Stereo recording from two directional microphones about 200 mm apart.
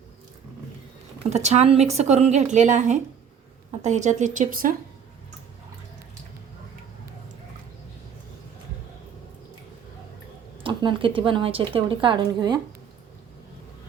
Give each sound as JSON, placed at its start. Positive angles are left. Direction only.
{"t": 1.3, "sound": "speech", "side_deg": -35}
{"t": 10.6, "sound": "a woman's voice", "side_deg": -25}